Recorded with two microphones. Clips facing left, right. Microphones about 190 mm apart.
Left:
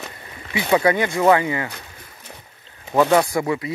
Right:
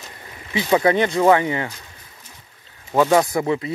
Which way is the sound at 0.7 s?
25° right (ahead or behind).